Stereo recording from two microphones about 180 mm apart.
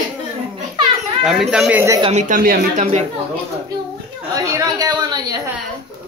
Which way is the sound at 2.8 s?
40° right (ahead or behind).